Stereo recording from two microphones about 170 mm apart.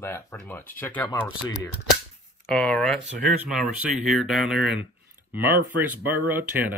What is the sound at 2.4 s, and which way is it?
Speech, 5° left (ahead or behind).